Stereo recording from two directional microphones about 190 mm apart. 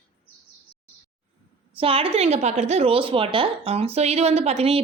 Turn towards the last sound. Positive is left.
turn(degrees=-35)  # may be behind; listen again after turning